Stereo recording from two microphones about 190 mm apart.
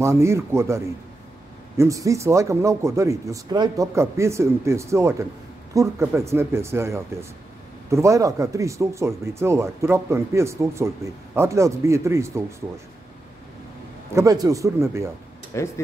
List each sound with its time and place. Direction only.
0.0 s speech: 15° right (ahead or behind)
14.1 s speech: 20° right (ahead or behind)
15.5 s speech: 15° left (ahead or behind)